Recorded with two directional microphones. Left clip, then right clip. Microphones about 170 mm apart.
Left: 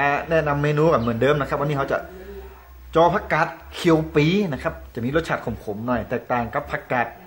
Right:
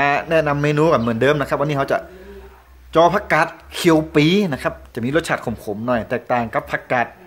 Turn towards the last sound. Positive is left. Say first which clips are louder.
# right 4 dB
turn(degrees=-55)  # may be behind; listen again after turning